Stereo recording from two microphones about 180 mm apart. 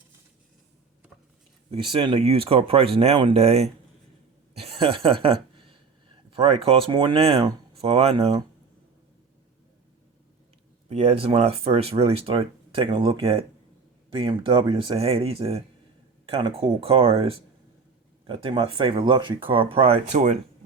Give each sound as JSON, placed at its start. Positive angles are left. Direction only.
{"t": 1.7, "sound": "speech", "side_deg": -25}
{"t": 4.5, "sound": "a sound", "side_deg": -30}
{"t": 7.7, "sound": "speech", "side_deg": -35}
{"t": 10.8, "sound": "speech", "side_deg": -35}